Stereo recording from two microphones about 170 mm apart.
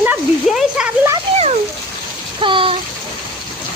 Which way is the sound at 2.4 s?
30° right (ahead or behind).